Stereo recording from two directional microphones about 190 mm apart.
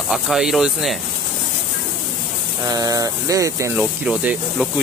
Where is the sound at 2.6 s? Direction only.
20° right (ahead or behind).